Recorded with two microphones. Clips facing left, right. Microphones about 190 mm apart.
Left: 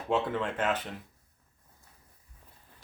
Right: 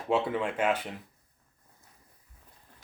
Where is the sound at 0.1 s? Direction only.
10° right (ahead or behind).